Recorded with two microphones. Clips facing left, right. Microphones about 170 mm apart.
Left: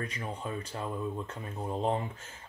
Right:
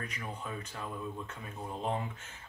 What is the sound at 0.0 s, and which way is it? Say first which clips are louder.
Speech: left 4 dB; 30° left (ahead or behind).